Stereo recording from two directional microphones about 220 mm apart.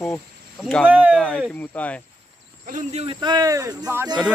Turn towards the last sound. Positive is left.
turn(degrees=-10)  # may be behind; listen again after turning